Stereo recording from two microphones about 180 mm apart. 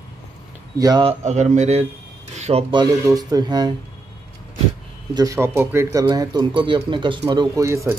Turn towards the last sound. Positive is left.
turn(degrees=-15)  # may be behind; listen again after turning